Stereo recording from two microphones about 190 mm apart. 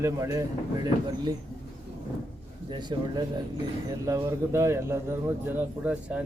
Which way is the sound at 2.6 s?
25° right (ahead or behind).